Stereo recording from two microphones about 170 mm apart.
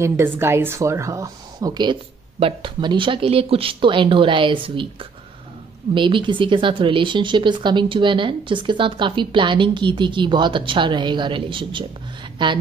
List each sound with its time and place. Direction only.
0.0 s speech: 15° right (ahead or behind)